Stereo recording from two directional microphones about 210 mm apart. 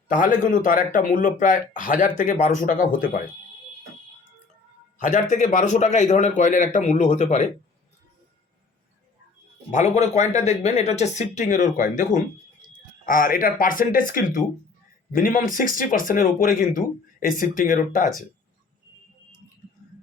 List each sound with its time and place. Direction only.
0.1 s speech: 40° left (ahead or behind)
4.9 s speech: 35° left (ahead or behind)
9.7 s speech: 35° left (ahead or behind)